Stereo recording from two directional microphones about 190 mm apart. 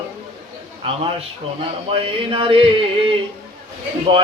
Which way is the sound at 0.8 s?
30° right (ahead or behind).